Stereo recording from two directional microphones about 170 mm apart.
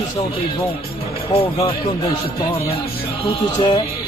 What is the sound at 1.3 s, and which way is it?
Speech, 35° left (ahead or behind).